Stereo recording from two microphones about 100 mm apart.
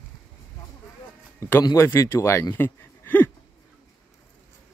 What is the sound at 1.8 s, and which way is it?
Speech, 25° left (ahead or behind).